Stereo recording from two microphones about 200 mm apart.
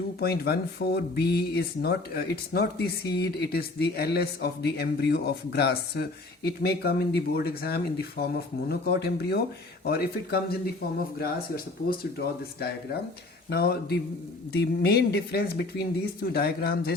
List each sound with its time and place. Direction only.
0.2 s speech: 50° left (ahead or behind)